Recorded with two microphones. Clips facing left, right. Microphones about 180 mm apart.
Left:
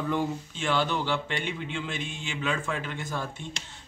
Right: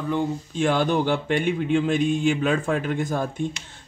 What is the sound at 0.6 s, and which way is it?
Speech, 50° right (ahead or behind).